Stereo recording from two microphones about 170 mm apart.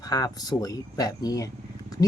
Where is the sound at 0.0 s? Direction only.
20° left (ahead or behind).